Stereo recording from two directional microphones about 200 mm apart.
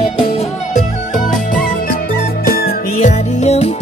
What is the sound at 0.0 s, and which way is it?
Music, 30° left (ahead or behind).